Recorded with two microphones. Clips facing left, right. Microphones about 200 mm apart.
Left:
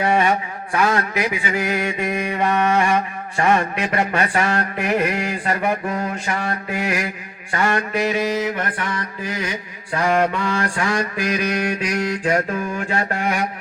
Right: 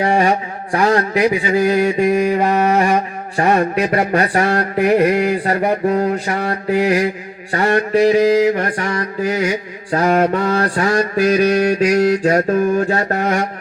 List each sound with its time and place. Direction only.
0.0 s mantra: 35° right (ahead or behind)